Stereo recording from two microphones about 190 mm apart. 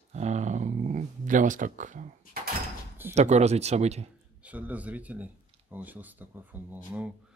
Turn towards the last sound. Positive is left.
turn(degrees=-10)  # may be behind; listen again after turning